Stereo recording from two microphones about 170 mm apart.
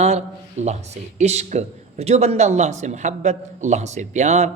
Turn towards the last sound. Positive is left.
turn(degrees=-40)  # may be behind; listen again after turning